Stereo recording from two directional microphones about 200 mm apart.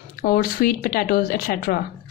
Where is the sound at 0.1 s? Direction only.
45° left (ahead or behind).